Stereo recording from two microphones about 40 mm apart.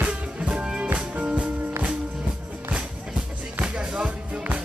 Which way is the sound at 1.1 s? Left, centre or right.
Right.